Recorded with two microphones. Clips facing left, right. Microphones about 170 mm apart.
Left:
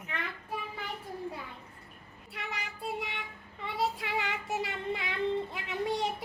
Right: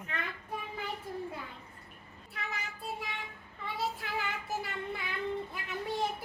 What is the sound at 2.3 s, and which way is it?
Child singing, 70° left (ahead or behind).